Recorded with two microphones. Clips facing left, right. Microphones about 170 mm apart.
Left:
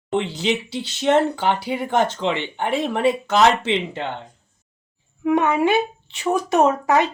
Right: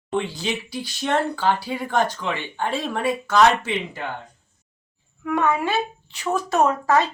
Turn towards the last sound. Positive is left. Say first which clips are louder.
# left 2 dB
turn(degrees=20)  # may be behind; listen again after turning